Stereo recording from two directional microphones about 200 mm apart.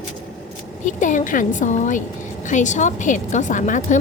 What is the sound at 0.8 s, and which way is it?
A woman's voice, 40° left (ahead or behind).